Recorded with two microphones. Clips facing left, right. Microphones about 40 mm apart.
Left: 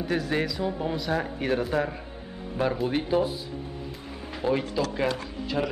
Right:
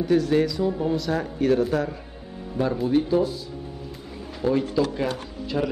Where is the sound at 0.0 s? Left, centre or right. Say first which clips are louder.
Right 6 dB; left.